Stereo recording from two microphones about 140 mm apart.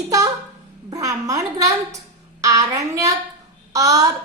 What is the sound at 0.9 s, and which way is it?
A woman's voice, 25° right (ahead or behind).